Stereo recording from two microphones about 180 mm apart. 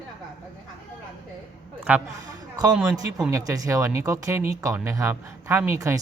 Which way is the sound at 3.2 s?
20° right (ahead or behind).